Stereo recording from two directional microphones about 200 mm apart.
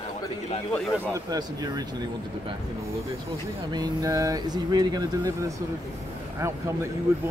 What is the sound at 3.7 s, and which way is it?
Speech, 20° right (ahead or behind).